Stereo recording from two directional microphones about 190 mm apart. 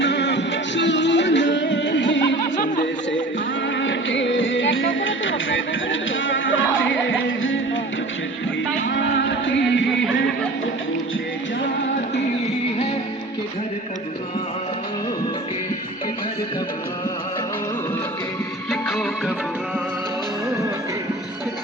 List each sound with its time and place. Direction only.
0.0 s music: 65° left (ahead or behind)
3.8 s music: 75° left (ahead or behind); by 7.6 s 90° left
18.7 s music: centre (ahead or behind)